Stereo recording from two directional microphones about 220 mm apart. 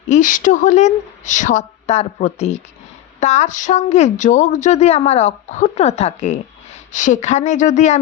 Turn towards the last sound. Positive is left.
turn(degrees=35)  # may be behind; listen again after turning